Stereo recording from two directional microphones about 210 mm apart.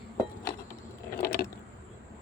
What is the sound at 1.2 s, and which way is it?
Vehicle, 45° left (ahead or behind).